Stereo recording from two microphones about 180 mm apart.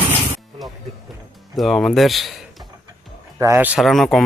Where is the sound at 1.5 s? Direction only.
Centre (ahead or behind).